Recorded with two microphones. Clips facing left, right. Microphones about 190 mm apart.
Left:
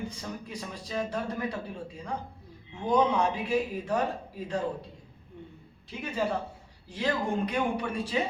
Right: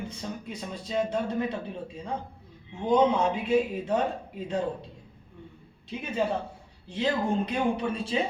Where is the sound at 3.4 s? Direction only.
25° right (ahead or behind).